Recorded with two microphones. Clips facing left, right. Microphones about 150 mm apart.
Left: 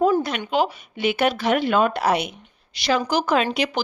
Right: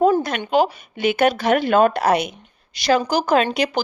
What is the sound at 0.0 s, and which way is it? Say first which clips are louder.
Speech: right 2 dB; 45° right (ahead or behind).